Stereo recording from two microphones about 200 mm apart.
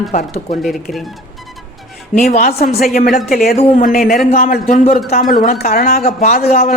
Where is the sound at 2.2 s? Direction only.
40° left (ahead or behind).